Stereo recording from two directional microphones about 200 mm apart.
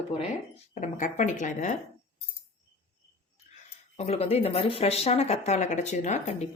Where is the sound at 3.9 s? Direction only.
30° left (ahead or behind).